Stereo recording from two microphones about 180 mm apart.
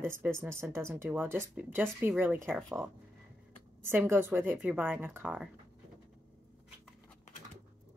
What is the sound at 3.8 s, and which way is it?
Speech, 15° right (ahead or behind).